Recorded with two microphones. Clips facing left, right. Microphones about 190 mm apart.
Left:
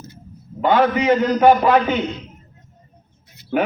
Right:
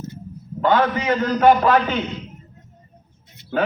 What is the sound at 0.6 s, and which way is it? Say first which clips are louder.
A man's voice: left 2 dB; 15° left (ahead or behind).